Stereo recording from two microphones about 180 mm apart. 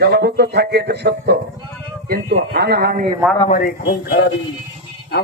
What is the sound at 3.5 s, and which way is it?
Speech, 55° left (ahead or behind).